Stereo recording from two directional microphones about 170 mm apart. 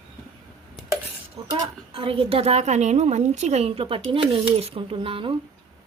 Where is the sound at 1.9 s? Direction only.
35° right (ahead or behind).